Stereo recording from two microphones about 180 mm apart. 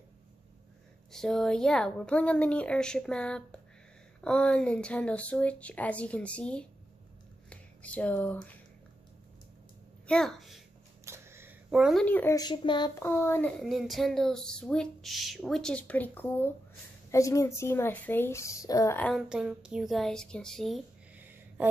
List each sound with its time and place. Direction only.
1.1 s speech: centre (ahead or behind)
10.0 s speech: 5° left (ahead or behind)
11.1 s a sound: 15° right (ahead or behind)
12.0 s speech: 10° left (ahead or behind)
12.4 s speech: 25° left (ahead or behind)
13.0 s speech: 15° left (ahead or behind)
19.1 s speech: 5° right (ahead or behind)
21.2 s a sound: 10° right (ahead or behind)